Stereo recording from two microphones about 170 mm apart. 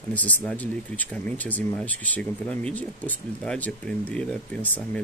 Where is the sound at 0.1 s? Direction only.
10° left (ahead or behind).